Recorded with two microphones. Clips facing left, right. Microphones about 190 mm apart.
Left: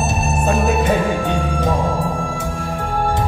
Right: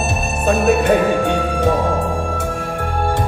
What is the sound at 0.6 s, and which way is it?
Music, 65° right (ahead or behind).